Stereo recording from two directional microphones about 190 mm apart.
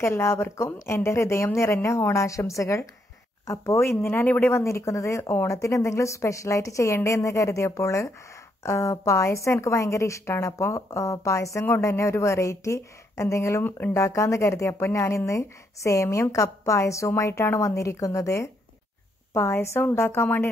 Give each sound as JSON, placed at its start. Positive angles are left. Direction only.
{"t": 0.0, "sound": "a woman's voice", "side_deg": 15}